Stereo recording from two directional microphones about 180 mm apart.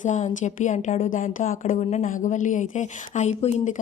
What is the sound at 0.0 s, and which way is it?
A woman's voice, 40° left (ahead or behind).